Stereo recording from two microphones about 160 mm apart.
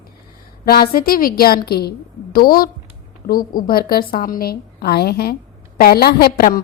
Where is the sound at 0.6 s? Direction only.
70° left (ahead or behind).